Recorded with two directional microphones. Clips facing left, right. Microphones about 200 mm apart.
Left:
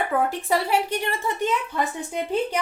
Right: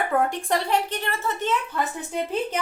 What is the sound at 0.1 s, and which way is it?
A woman's voice, centre (ahead or behind).